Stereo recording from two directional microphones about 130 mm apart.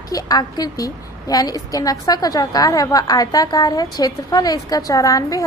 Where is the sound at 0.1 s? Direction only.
30° left (ahead or behind).